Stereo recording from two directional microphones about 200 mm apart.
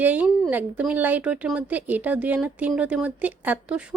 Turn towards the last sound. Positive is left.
turn(degrees=-5)  # may be behind; listen again after turning